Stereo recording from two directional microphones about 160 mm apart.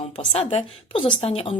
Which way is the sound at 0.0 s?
40° left (ahead or behind).